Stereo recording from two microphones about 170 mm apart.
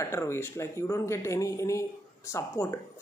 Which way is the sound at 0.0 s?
15° left (ahead or behind).